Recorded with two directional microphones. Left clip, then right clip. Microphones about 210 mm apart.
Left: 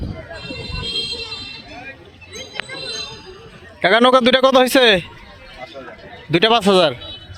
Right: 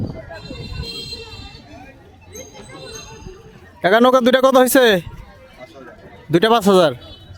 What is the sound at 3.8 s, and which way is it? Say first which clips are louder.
A man's voice: even; 10° right (ahead or behind).